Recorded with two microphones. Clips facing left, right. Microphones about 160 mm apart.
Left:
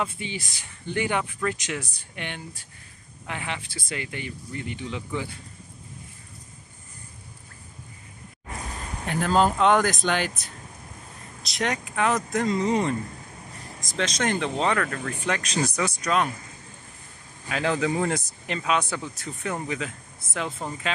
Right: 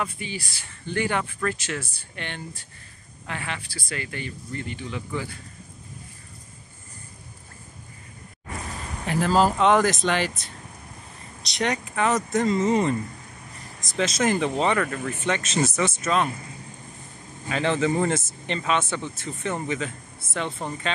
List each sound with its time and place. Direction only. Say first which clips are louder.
0.0 s speech: left 1 dB; 20° left (ahead or behind)
9.0 s speech: right 1 dB; centre (ahead or behind)
13.9 s speech: right 3 dB; 5° right (ahead or behind)
17.5 s speech: right 2 dB; centre (ahead or behind)